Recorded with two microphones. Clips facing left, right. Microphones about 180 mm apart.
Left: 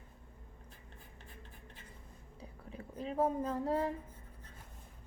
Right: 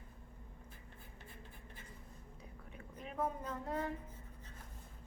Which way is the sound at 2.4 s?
30° left (ahead or behind).